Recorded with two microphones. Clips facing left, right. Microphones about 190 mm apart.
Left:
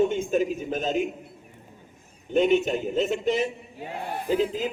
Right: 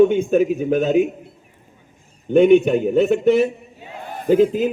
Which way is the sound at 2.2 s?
60° right (ahead or behind).